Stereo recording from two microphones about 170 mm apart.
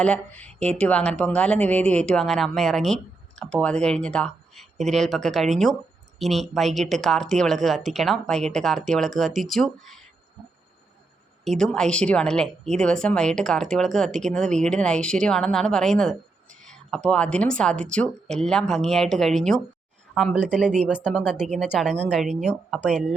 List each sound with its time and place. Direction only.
0.0 s a woman's voice: 5° left (ahead or behind)
11.4 s a woman's voice: 5° left (ahead or behind)
20.3 s speech: 45° right (ahead or behind)
21.0 s a woman's voice: 5° right (ahead or behind)